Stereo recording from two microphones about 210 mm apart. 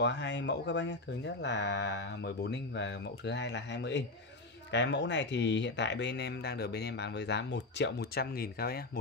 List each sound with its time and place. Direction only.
0.0 s speech: 55° left (ahead or behind)